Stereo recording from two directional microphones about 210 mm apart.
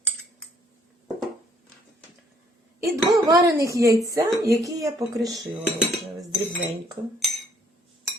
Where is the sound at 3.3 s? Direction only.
15° right (ahead or behind).